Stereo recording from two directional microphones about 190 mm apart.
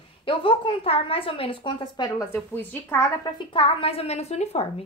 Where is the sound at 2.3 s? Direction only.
10° left (ahead or behind); by 4.8 s 35° left (ahead or behind).